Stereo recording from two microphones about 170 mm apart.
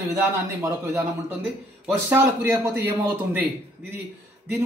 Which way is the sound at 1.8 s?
15° right (ahead or behind).